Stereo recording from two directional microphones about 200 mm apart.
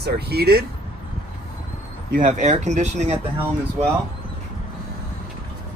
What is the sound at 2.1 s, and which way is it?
Speech, 40° right (ahead or behind).